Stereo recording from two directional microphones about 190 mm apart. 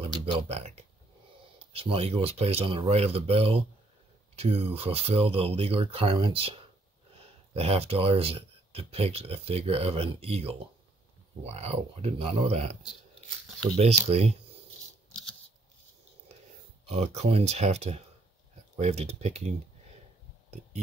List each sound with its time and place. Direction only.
0.0 s speech: 30° right (ahead or behind)
7.5 s speech: 30° right (ahead or behind)
13.7 s speech: 35° right (ahead or behind)
16.8 s speech: 35° right (ahead or behind)